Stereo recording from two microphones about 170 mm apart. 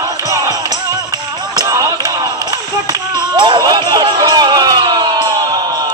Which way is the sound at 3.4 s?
25° right (ahead or behind).